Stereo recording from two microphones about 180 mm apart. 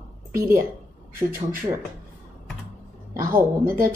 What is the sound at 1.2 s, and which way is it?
Speech, 50° right (ahead or behind).